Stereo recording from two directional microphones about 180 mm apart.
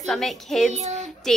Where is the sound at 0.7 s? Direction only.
40° right (ahead or behind).